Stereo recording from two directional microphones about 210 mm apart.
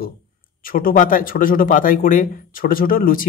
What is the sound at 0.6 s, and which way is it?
Speech, 40° left (ahead or behind).